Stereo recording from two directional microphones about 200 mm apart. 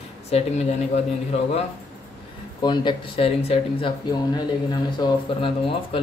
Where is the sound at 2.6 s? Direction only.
20° left (ahead or behind).